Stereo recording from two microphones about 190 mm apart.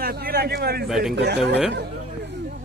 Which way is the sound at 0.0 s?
55° right (ahead or behind).